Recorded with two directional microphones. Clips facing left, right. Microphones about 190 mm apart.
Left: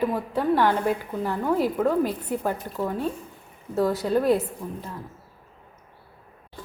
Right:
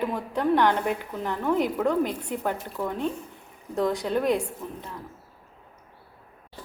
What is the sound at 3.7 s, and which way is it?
Speech, 5° left (ahead or behind).